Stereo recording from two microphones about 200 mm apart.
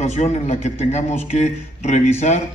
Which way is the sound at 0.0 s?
35° left (ahead or behind).